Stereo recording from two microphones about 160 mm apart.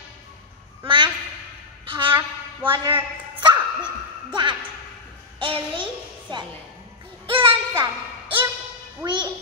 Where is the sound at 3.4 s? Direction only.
30° right (ahead or behind).